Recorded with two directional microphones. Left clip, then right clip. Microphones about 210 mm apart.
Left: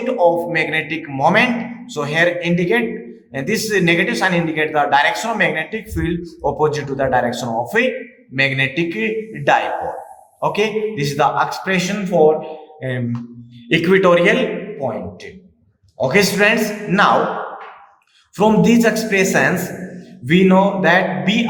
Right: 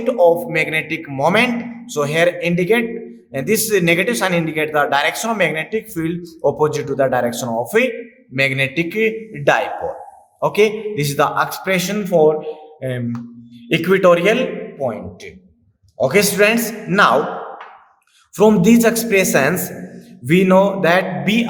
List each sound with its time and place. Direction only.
0.0 s speech: 35° right (ahead or behind)
18.3 s speech: 35° right (ahead or behind)